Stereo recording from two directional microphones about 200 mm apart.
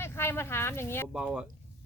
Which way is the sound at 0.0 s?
10° left (ahead or behind).